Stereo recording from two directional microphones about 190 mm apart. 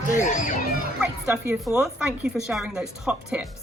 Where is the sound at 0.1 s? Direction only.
40° left (ahead or behind).